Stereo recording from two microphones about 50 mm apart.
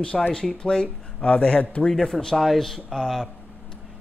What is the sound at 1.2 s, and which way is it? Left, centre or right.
Speech, left.